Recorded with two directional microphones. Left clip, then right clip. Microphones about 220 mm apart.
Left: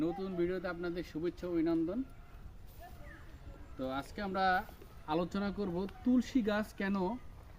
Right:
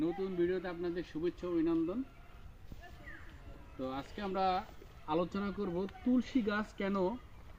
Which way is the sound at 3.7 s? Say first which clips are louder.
Left 2 dB; 15° left (ahead or behind).